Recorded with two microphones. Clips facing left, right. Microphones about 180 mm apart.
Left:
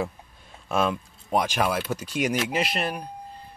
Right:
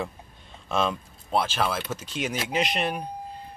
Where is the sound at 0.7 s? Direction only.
10° left (ahead or behind).